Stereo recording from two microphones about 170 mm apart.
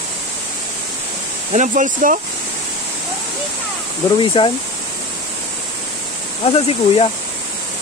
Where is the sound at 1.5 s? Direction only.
45° right (ahead or behind).